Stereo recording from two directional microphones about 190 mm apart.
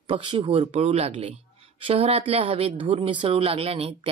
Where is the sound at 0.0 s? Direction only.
25° right (ahead or behind).